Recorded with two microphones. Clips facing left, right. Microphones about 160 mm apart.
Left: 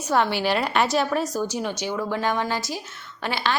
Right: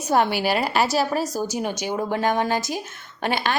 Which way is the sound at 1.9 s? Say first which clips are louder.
Right 3 dB; 50° right (ahead or behind).